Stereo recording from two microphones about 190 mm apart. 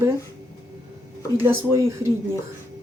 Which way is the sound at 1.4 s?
15° right (ahead or behind).